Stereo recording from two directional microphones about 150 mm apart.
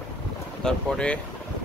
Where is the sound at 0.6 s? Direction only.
5° left (ahead or behind).